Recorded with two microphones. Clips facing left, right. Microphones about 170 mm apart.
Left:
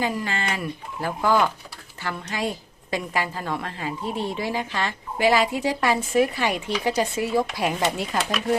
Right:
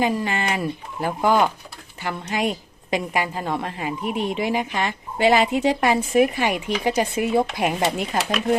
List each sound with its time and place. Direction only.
0.0 s a woman's voice: 20° right (ahead or behind)